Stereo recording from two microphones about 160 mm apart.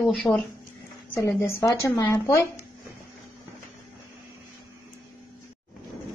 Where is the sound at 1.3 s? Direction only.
15° left (ahead or behind).